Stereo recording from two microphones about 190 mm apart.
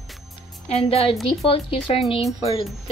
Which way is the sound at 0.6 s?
35° left (ahead or behind).